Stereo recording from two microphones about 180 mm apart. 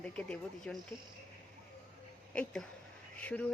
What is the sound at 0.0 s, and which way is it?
Speech, 5° left (ahead or behind).